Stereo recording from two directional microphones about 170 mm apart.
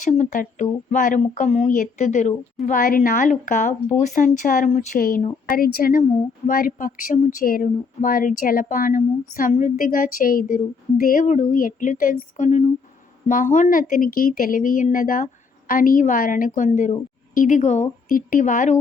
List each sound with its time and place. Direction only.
0.0 s speech: 45° left (ahead or behind)
2.6 s speech: 55° left (ahead or behind)
6.0 s speech: 45° left (ahead or behind)